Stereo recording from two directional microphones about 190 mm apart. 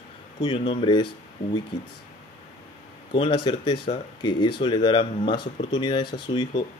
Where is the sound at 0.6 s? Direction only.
30° left (ahead or behind).